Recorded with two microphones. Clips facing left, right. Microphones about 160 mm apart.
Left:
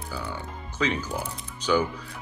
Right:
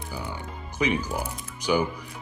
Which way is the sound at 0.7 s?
15° right (ahead or behind).